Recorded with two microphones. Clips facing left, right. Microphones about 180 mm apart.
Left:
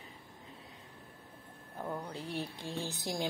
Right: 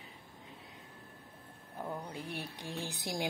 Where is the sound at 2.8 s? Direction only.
15° right (ahead or behind).